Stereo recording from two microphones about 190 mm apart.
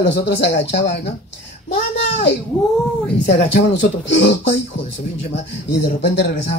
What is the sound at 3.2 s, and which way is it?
Speech, 70° left (ahead or behind).